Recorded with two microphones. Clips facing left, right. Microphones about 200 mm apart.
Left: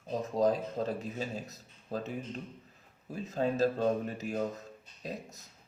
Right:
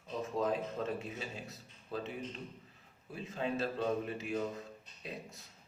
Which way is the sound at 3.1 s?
40° left (ahead or behind).